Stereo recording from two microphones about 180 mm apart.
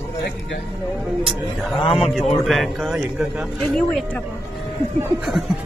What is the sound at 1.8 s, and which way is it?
Speech, 30° left (ahead or behind).